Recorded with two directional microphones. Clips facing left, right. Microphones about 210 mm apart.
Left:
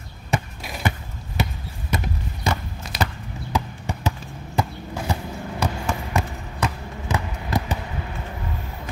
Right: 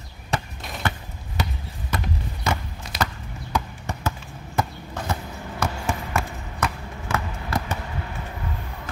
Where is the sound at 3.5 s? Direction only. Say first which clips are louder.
Left 1 dB; 15° left (ahead or behind).